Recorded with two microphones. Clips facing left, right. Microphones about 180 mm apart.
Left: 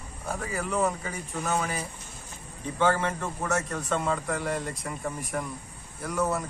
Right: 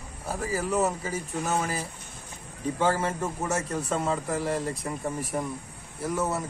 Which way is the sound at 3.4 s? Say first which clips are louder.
Left 1 dB; 25° right (ahead or behind).